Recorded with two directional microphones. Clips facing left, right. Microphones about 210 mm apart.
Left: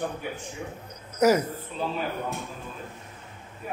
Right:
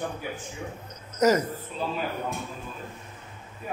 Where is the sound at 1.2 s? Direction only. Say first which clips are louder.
Left 1 dB; 10° left (ahead or behind).